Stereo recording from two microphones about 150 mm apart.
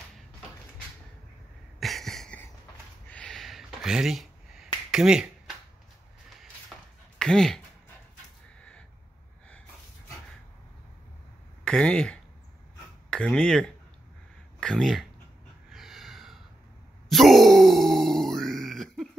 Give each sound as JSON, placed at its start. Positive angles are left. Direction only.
{"t": 1.8, "sound": "a sound", "side_deg": 0}
{"t": 3.1, "sound": "finger snapping", "side_deg": 5}
{"t": 7.2, "sound": "speech", "side_deg": 5}
{"t": 11.6, "sound": "speech", "side_deg": 5}
{"t": 15.7, "sound": "a sound", "side_deg": 0}
{"t": 17.1, "sound": "grunt", "side_deg": 0}